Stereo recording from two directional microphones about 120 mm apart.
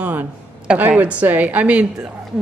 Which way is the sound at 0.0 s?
15° right (ahead or behind).